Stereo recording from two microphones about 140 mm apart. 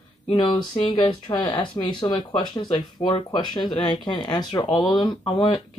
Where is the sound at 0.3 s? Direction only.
35° left (ahead or behind).